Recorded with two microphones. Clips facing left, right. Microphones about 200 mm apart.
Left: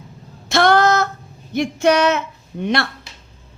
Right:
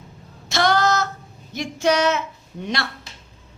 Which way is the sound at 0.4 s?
55° left (ahead or behind).